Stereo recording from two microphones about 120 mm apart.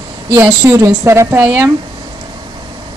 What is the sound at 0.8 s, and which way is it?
Speech, 20° right (ahead or behind).